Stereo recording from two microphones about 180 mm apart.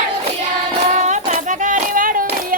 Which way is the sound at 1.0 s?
45° right (ahead or behind).